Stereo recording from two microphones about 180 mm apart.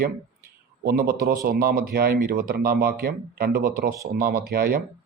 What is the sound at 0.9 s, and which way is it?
Speech, 55° right (ahead or behind).